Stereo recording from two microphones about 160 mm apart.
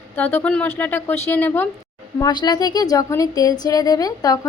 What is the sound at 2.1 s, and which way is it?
A woman's voice, 25° left (ahead or behind).